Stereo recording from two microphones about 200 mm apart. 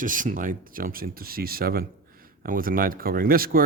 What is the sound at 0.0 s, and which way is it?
Speech, 40° right (ahead or behind).